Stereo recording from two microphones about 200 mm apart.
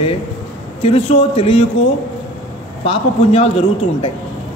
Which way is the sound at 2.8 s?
30° left (ahead or behind).